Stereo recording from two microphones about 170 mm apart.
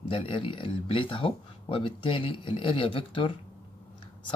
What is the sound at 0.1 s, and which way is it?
Speech, 30° left (ahead or behind).